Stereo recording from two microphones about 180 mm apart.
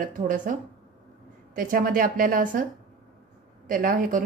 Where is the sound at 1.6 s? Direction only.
50° right (ahead or behind).